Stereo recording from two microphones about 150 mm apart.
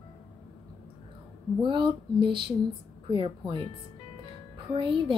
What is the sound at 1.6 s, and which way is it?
A woman's voice, 30° right (ahead or behind).